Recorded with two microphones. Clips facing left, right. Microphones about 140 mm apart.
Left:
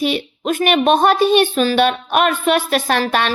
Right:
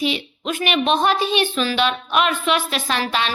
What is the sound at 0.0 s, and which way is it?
A woman's voice, 50° left (ahead or behind).